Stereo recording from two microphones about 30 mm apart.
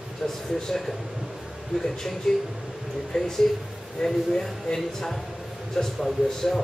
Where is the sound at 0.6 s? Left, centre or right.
Centre.